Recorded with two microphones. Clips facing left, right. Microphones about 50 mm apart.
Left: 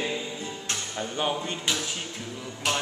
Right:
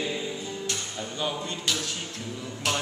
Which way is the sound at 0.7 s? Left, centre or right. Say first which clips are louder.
Left 2 dB; left.